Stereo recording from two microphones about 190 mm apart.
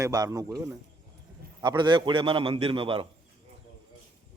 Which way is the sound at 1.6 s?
25° right (ahead or behind).